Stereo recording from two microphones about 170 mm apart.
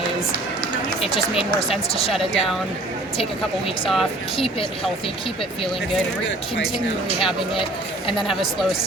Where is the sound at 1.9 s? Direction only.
35° left (ahead or behind).